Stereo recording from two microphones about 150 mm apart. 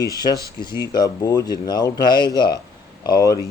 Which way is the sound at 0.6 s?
30° left (ahead or behind).